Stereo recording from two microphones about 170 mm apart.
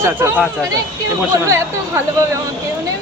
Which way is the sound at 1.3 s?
15° right (ahead or behind).